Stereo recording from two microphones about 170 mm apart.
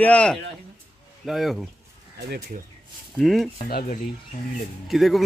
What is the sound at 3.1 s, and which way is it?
Speech, centre (ahead or behind).